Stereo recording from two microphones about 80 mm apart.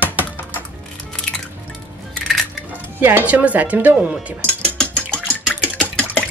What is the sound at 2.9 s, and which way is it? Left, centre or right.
Speech, right.